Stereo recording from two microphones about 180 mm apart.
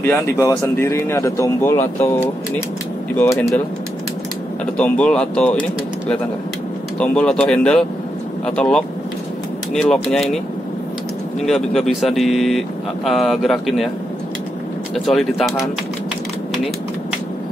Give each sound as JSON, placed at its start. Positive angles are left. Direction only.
{"t": 0.0, "sound": "speech", "side_deg": 15}
{"t": 3.2, "sound": "speech", "side_deg": 15}
{"t": 4.7, "sound": "speech", "side_deg": 5}
{"t": 11.4, "sound": "speech", "side_deg": 0}
{"t": 15.0, "sound": "speech", "side_deg": 0}